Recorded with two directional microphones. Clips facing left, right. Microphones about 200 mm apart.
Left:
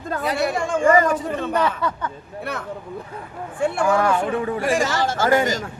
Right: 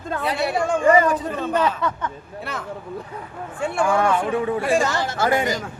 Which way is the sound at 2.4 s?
60° left (ahead or behind).